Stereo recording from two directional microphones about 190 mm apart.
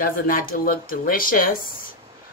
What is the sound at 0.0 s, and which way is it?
Speech, 50° left (ahead or behind).